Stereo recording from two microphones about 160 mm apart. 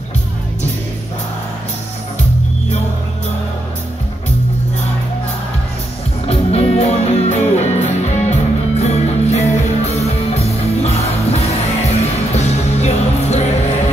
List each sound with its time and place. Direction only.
6.2 s music: 40° left (ahead or behind)